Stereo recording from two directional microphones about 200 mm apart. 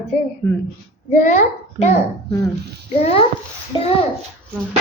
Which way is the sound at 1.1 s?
35° left (ahead or behind).